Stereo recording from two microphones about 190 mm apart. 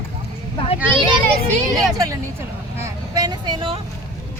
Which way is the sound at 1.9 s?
15° right (ahead or behind).